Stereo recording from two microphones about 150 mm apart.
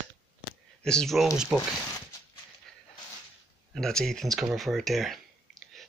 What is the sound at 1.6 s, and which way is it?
Zipper, 25° left (ahead or behind).